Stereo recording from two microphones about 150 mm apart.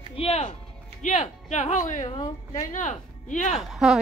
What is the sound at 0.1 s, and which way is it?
Music, 40° left (ahead or behind).